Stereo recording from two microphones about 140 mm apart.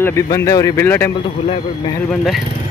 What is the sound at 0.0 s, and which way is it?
Speech, 20° left (ahead or behind).